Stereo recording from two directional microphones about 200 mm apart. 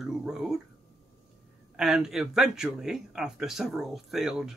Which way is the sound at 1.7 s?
5° right (ahead or behind).